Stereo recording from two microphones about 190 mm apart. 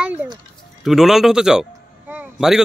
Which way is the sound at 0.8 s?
Centre (ahead or behind).